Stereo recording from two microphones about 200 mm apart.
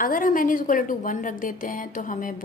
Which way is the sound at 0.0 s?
45° left (ahead or behind).